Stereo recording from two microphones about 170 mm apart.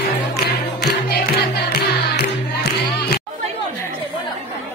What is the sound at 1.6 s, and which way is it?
Music, 70° left (ahead or behind).